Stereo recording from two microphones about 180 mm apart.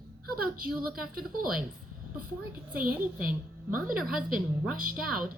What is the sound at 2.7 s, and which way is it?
Speech, 55° right (ahead or behind).